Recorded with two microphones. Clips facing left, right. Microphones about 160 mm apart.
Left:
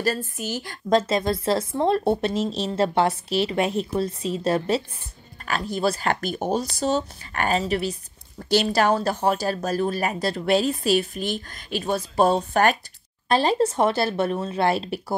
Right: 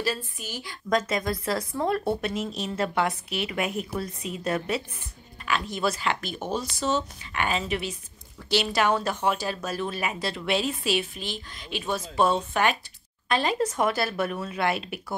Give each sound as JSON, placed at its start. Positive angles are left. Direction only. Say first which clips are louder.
{"t": 0.0, "sound": "a woman's voice", "louder": "left 5 dB", "side_deg": 45}
{"t": 0.8, "sound": "speech", "louder": "left 5 dB", "side_deg": 30}